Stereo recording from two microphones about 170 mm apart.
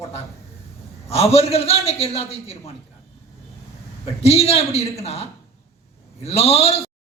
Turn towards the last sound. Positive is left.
turn(degrees=35)  # may be behind; listen again after turning